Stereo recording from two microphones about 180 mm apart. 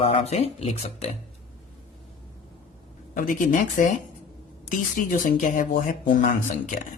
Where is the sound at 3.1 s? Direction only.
45° left (ahead or behind).